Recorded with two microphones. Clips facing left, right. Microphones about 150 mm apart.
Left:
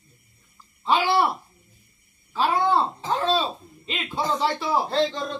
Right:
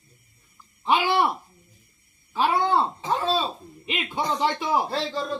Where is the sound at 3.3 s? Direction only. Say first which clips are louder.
Left 1 dB; 15° right (ahead or behind).